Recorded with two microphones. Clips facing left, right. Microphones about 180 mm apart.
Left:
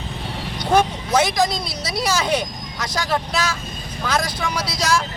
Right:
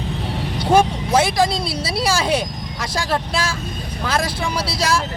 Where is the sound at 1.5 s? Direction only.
30° right (ahead or behind).